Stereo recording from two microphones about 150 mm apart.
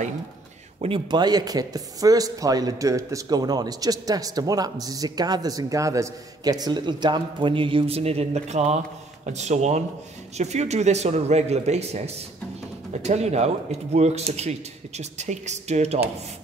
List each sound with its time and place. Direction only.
0.7 s a man's voice: 35° right (ahead or behind)
13.0 s a man's voice: 45° right (ahead or behind)